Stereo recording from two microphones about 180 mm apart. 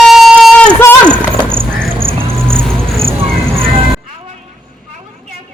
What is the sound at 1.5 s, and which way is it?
Music, 30° right (ahead or behind).